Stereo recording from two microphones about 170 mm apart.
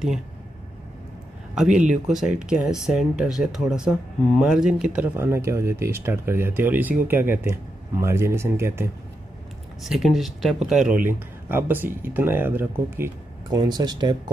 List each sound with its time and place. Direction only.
1.5 s speech: 5° right (ahead or behind)
9.8 s speech: centre (ahead or behind)
13.6 s speech: 25° right (ahead or behind)